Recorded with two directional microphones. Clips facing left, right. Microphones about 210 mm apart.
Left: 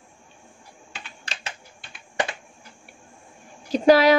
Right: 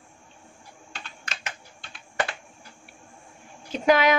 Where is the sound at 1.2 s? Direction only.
30° left (ahead or behind).